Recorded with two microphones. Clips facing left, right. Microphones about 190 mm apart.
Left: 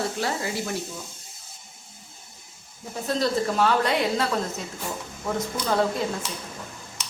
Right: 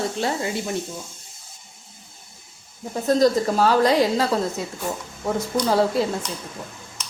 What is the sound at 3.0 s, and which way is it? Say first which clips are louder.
A woman's voice: right 6 dB; 40° right (ahead or behind).